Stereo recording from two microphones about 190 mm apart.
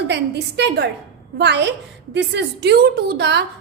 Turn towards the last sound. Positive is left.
turn(degrees=-60)  # may be behind; listen again after turning